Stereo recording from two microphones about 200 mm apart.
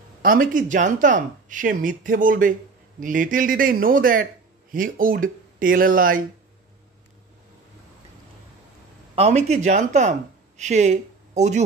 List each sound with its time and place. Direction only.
0.2 s a man's voice: 45° right (ahead or behind)
9.1 s speech: 30° right (ahead or behind)